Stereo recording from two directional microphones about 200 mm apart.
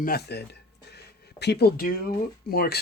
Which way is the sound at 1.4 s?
55° left (ahead or behind).